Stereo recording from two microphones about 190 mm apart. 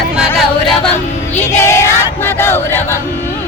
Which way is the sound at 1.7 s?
15° left (ahead or behind).